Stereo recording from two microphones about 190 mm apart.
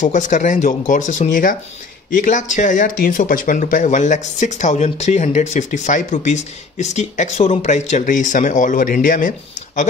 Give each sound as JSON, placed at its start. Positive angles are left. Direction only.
{"t": 0.0, "sound": "speech", "side_deg": 40}